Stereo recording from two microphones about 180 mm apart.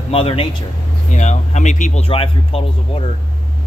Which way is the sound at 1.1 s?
40° left (ahead or behind).